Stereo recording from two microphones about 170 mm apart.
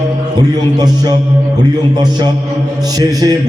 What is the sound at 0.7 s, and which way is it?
Speech, 25° right (ahead or behind).